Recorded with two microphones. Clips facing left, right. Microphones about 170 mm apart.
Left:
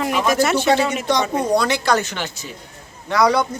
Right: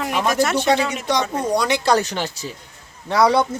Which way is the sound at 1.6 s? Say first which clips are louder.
Even; 20° right (ahead or behind).